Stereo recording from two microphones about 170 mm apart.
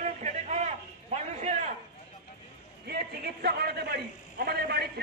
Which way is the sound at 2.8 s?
70° right (ahead or behind).